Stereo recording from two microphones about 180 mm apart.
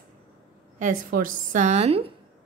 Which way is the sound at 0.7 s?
50° right (ahead or behind).